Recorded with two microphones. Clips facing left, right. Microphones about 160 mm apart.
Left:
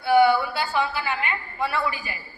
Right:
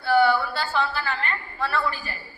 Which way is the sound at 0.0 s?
15° left (ahead or behind).